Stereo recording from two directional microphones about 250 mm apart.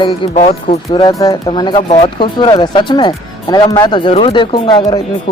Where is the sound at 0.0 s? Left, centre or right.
Left.